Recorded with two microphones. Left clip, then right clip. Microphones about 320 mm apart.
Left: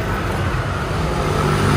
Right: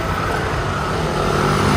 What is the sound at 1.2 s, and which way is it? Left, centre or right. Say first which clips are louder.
Vehicle: right 2 dB; right.